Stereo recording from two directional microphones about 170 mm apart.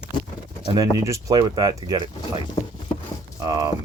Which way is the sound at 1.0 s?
20° right (ahead or behind).